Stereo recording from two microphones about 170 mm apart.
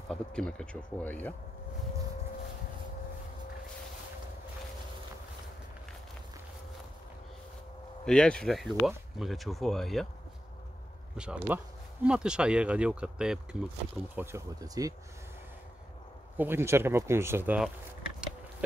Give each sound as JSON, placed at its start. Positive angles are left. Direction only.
{"t": 0.1, "sound": "speech", "side_deg": 5}
{"t": 8.0, "sound": "speech", "side_deg": 5}
{"t": 11.1, "sound": "speech", "side_deg": -10}
{"t": 14.1, "sound": "speech", "side_deg": -15}
{"t": 16.3, "sound": "speech", "side_deg": -15}